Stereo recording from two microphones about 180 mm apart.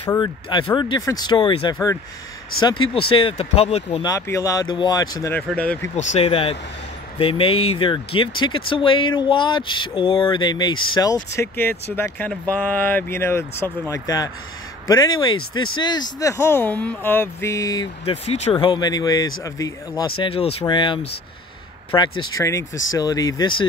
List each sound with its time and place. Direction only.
0.1 s speech: 25° left (ahead or behind)
4.0 s speech: 20° left (ahead or behind)
5.6 s speech: 10° left (ahead or behind)
5.9 s speech: 40° left (ahead or behind); by 17.8 s 20° left (ahead or behind)
18.0 s speech: 35° left (ahead or behind)
20.2 s speech: 35° left (ahead or behind)